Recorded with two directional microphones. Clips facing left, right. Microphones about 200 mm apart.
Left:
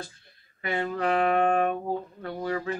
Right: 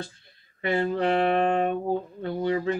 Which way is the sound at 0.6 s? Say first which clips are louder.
Right 4 dB; 30° right (ahead or behind).